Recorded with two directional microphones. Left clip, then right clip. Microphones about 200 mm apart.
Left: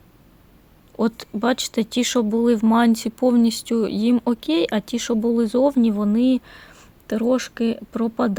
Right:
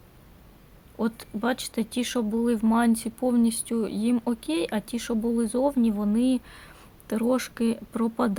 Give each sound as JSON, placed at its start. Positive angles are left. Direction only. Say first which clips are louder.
{"t": 0.9, "sound": "speech", "louder": "left 7 dB", "side_deg": 35}